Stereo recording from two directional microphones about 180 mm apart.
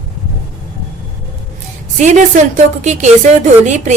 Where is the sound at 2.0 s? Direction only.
45° right (ahead or behind).